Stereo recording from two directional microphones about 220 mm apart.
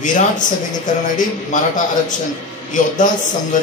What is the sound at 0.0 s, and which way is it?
Speech, 35° left (ahead or behind).